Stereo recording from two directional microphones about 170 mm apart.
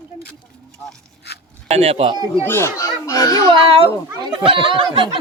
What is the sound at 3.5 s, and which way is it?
Speech, 35° right (ahead or behind).